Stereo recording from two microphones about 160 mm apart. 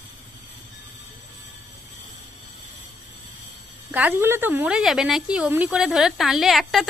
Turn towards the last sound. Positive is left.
turn(degrees=0)  # may be behind; listen again after turning